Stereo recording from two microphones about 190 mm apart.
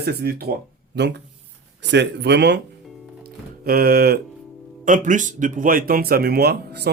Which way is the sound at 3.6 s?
50° right (ahead or behind).